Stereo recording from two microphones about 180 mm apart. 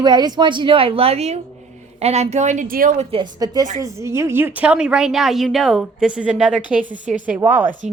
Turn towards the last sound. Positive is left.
turn(degrees=-10)  # may be behind; listen again after turning